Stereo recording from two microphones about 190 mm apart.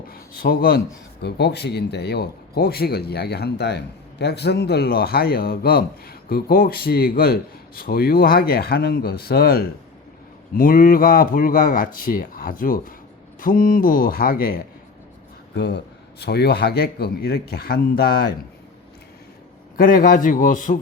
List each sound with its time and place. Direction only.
0.1 s a man's voice: 50° left (ahead or behind)
15.5 s speech: 65° left (ahead or behind)
19.7 s a man's voice: 45° left (ahead or behind)